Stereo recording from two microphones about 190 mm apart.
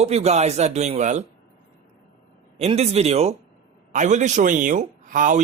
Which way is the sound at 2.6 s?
35° right (ahead or behind).